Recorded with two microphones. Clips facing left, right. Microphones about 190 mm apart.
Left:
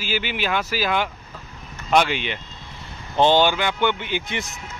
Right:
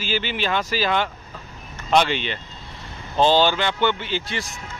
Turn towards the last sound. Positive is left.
turn(degrees=20)  # may be behind; listen again after turning